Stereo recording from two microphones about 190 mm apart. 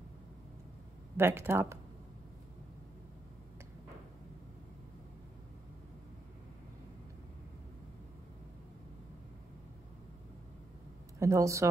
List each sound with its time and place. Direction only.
1.1 s speech: 15° right (ahead or behind)
11.1 s speech: 15° right (ahead or behind)